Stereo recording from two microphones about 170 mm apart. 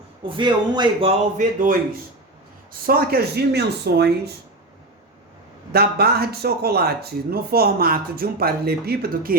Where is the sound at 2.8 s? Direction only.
65° right (ahead or behind).